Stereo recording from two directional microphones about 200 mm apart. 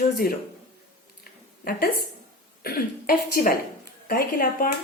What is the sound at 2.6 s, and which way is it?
A woman's voice, 50° left (ahead or behind).